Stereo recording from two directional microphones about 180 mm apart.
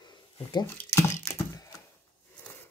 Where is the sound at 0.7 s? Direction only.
15° left (ahead or behind).